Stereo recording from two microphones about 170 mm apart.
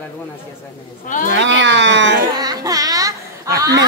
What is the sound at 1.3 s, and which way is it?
Speech, 90° right.